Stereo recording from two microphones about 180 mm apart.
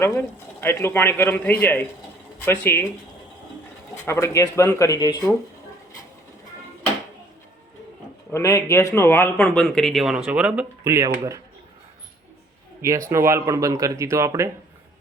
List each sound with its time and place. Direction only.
0.0 s a man's voice: 15° left (ahead or behind)
3.9 s a man's voice: 15° left (ahead or behind)
8.3 s a man's voice: 15° left (ahead or behind); by 11.3 s 15° right (ahead or behind)
12.8 s speech: 15° right (ahead or behind)